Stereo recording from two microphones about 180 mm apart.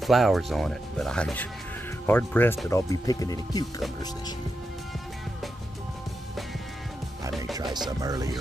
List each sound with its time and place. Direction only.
0.0 s speech: centre (ahead or behind); by 3.6 s 20° left (ahead or behind)
8.0 s speech: 20° right (ahead or behind)